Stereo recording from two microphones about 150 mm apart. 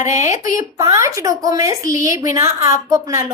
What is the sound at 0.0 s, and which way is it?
Speech, 20° right (ahead or behind).